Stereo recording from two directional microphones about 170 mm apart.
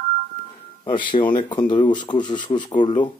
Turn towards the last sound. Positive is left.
turn(degrees=25)  # may be behind; listen again after turning